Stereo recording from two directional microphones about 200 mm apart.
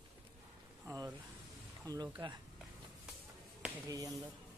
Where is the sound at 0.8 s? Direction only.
15° right (ahead or behind).